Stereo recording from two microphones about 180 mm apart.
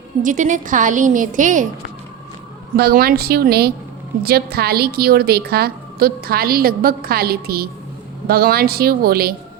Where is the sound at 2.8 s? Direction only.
60° right (ahead or behind).